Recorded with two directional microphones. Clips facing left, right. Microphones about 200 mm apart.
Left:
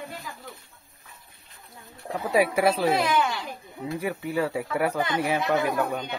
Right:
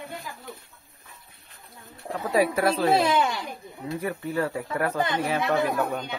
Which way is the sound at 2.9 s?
30° right (ahead or behind).